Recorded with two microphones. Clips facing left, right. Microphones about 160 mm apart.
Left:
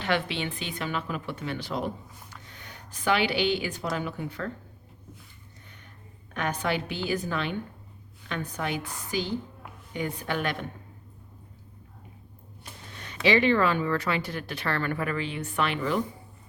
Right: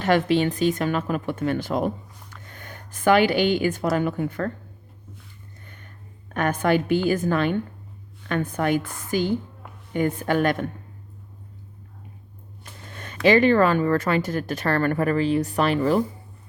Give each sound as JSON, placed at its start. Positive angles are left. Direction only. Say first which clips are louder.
{"t": 0.0, "sound": "a woman's voice", "louder": "right 9 dB", "side_deg": -45}
{"t": 6.3, "sound": "speech", "louder": "right 8 dB", "side_deg": -50}
{"t": 12.9, "sound": "a sound", "louder": "right 7 dB", "side_deg": -50}
{"t": 13.2, "sound": "speech", "louder": "right 6 dB", "side_deg": -45}